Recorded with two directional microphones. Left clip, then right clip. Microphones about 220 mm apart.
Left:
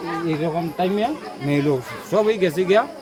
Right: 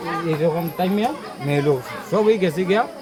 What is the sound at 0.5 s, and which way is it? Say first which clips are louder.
A man's voice: left 1 dB; 20° left (ahead or behind).